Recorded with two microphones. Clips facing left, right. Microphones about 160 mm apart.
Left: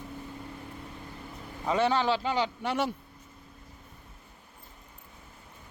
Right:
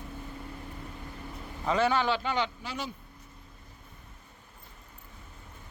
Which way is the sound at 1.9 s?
30° left (ahead or behind).